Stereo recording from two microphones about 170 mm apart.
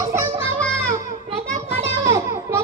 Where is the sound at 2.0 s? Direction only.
15° right (ahead or behind).